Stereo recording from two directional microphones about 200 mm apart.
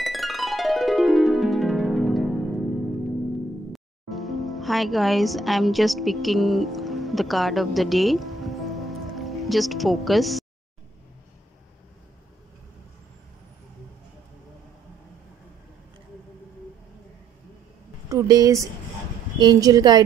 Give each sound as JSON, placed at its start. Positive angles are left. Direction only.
{"t": 0.0, "sound": "music", "side_deg": 0}
{"t": 3.7, "sound": "music", "side_deg": 0}
{"t": 18.0, "sound": "a woman's voice", "side_deg": -15}